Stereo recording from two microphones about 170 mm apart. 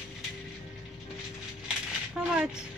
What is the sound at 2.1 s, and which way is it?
Speech, 5° right (ahead or behind).